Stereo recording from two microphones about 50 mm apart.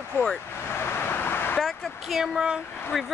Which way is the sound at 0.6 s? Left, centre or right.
Left.